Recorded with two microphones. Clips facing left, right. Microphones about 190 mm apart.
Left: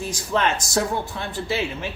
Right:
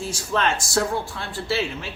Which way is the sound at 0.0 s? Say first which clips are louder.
Left 1 dB; 15° left (ahead or behind).